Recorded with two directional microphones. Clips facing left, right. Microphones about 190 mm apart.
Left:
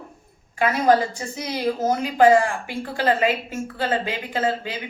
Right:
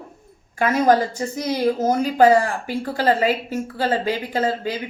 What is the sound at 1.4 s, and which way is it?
A woman's voice, 40° right (ahead or behind).